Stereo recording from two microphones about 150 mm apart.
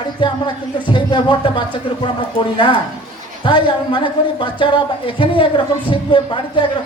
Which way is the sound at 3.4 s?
35° left (ahead or behind).